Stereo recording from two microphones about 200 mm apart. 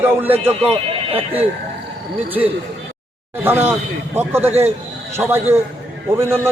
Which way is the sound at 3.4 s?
10° right (ahead or behind).